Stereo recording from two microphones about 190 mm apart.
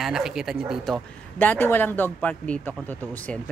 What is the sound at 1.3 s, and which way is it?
A man's voice, 10° left (ahead or behind).